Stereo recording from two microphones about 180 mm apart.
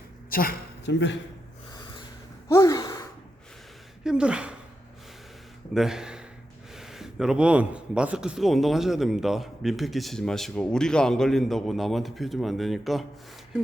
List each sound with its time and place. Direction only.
0.3 s a sound: 55° left (ahead or behind)
2.5 s gasp: 20° left (ahead or behind)
4.0 s a woman's voice: 5° right (ahead or behind)
5.7 s speech: 5° right (ahead or behind)